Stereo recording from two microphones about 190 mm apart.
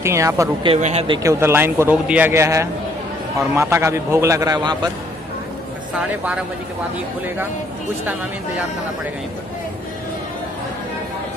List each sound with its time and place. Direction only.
0.0 s a man's voice: 15° right (ahead or behind)
0.7 s speech: 35° right (ahead or behind)
1.2 s a man's voice: 10° right (ahead or behind)
5.9 s speech: 5° right (ahead or behind)